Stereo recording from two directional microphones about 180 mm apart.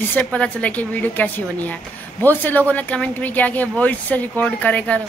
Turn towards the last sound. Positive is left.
turn(degrees=10)  # may be behind; listen again after turning